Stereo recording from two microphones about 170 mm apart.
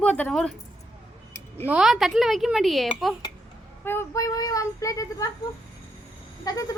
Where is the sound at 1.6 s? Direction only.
5° right (ahead or behind).